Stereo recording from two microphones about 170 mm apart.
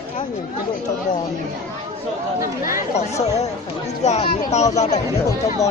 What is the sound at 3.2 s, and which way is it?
Speech, 40° left (ahead or behind).